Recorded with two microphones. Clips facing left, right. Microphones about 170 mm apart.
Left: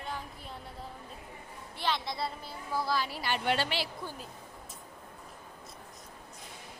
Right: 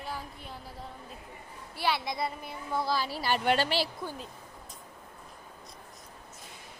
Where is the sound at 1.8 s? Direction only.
10° right (ahead or behind).